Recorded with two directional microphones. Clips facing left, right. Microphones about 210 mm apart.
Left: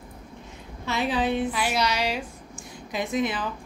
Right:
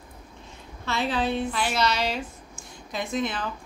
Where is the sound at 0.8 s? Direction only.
15° left (ahead or behind).